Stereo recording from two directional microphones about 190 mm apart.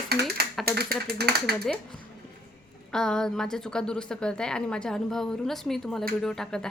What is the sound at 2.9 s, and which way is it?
Speech, 5° left (ahead or behind).